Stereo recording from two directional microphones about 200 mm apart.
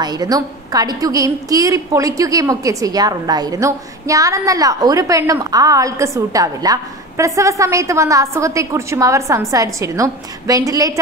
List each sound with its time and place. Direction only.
0.0 s a woman's voice: 20° right (ahead or behind)